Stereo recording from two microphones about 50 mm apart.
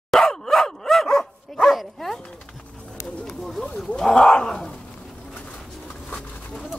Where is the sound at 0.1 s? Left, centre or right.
Centre.